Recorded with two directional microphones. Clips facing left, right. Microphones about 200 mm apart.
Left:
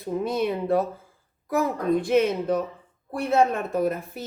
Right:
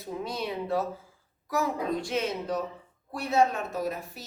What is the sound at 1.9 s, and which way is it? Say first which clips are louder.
A woman's voice: left 9 dB; 55° left (ahead or behind).